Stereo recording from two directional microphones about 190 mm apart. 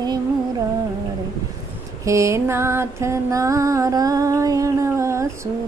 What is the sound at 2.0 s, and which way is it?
Music, 15° right (ahead or behind).